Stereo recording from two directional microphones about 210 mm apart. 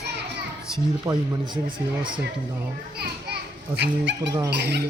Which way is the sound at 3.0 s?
50° right (ahead or behind).